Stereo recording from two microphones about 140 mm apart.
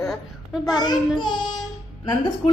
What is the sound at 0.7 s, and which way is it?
Speech, 30° left (ahead or behind).